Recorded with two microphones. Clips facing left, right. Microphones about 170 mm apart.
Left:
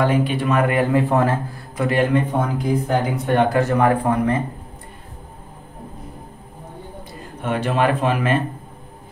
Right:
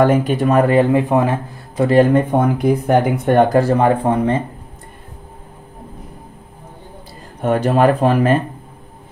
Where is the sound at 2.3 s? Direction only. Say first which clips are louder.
Right 5 dB; 60° right (ahead or behind); by 4.4 s 25° right (ahead or behind).